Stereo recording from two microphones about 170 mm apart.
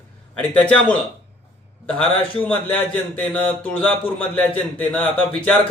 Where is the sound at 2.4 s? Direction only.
10° left (ahead or behind).